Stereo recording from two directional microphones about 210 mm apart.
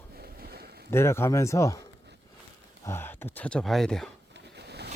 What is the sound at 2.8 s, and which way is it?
Speech, 10° left (ahead or behind).